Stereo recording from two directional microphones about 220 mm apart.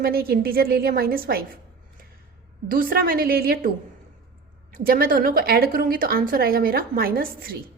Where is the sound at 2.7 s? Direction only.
40° right (ahead or behind).